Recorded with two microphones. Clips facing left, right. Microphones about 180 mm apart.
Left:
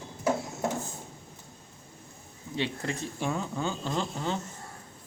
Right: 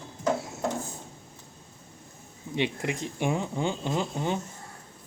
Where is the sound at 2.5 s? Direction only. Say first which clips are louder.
Right 3 dB; 15° right (ahead or behind).